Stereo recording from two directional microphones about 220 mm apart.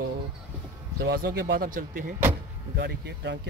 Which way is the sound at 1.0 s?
45° right (ahead or behind).